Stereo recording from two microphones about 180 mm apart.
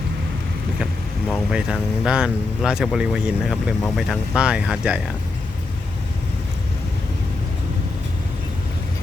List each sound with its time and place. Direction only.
1.3 s speech: 5° right (ahead or behind)